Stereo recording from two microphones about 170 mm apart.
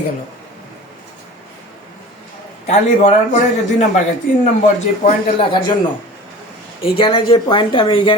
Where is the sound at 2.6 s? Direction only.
40° left (ahead or behind).